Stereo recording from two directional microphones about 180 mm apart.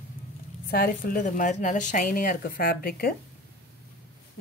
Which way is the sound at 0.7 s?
55° left (ahead or behind).